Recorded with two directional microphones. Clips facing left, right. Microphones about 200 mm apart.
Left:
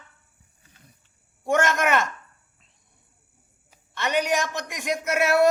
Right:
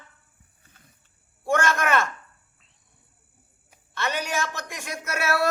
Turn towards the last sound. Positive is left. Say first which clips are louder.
# left 6 dB
turn(degrees=15)  # may be behind; listen again after turning